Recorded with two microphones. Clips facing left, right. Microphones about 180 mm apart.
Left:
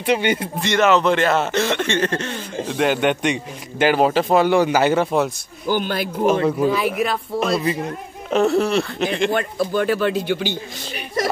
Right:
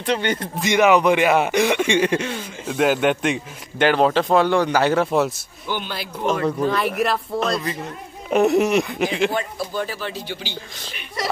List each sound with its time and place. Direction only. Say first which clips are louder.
0.0 s speech: left 3 dB; 10° left (ahead or behind)
0.6 s a man's voice: right 2 dB; 10° right (ahead or behind)
5.7 s a man's voice: left 7 dB; 45° left (ahead or behind)
6.4 s a man's voice: left 2 dB; 5° left (ahead or behind)
8.3 s speech: right 1 dB; 15° right (ahead or behind)
9.3 s speech: left 5 dB; 60° left (ahead or behind)